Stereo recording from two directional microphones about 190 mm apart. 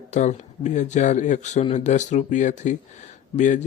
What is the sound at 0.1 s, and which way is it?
A man's voice, 40° left (ahead or behind).